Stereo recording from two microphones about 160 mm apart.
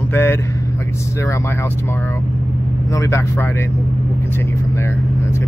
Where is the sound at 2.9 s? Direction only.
20° left (ahead or behind).